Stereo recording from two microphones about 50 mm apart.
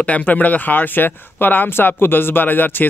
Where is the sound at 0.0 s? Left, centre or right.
Left.